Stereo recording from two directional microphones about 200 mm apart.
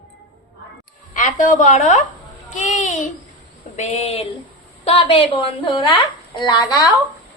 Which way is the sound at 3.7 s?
35° left (ahead or behind).